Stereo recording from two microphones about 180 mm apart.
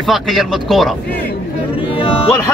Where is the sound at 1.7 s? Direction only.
30° left (ahead or behind).